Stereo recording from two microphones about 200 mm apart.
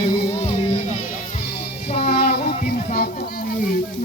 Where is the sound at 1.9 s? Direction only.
50° left (ahead or behind).